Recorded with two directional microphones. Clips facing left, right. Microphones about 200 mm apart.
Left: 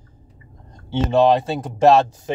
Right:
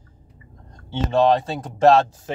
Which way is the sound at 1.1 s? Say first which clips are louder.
Left 2 dB; 5° left (ahead or behind).